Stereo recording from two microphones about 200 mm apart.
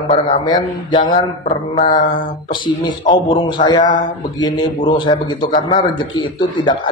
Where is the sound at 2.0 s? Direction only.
45° left (ahead or behind).